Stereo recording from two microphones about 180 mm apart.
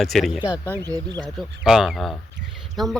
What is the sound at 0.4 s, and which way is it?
Speech, 20° left (ahead or behind).